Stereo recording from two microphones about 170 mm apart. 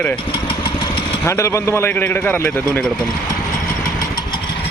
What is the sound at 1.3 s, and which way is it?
Speech, 15° left (ahead or behind).